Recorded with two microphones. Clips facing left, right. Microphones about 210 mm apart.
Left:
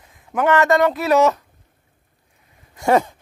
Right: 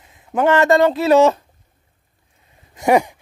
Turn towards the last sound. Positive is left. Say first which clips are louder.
# right 2 dB
turn(degrees=-15)  # may be behind; listen again after turning